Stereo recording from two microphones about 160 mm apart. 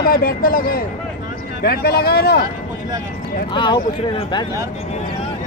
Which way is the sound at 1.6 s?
80° left.